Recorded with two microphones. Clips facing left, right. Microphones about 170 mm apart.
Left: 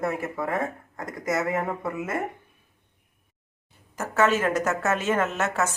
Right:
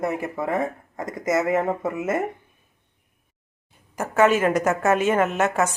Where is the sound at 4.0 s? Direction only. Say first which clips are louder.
Right 4 dB; 15° right (ahead or behind).